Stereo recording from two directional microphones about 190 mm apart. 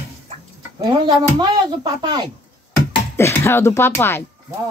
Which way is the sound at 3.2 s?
15° left (ahead or behind).